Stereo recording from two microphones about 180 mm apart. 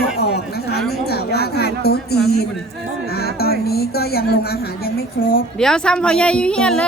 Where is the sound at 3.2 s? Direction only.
60° left (ahead or behind).